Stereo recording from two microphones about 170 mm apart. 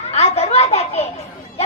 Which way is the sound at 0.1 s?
35° left (ahead or behind).